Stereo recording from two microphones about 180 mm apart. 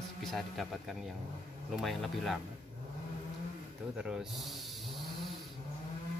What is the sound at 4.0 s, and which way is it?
Snake, 5° right (ahead or behind).